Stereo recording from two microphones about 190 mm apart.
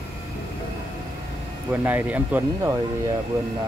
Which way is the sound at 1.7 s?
10° right (ahead or behind).